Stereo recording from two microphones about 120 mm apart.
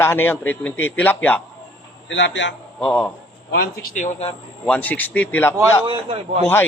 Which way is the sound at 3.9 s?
90° left.